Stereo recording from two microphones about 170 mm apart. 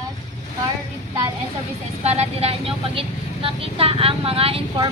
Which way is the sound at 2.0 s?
40° right (ahead or behind).